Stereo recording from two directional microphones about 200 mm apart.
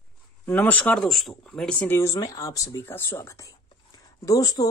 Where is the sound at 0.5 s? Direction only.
10° left (ahead or behind).